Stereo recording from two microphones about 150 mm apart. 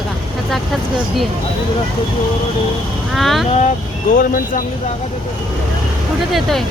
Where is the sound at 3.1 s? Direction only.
Centre (ahead or behind).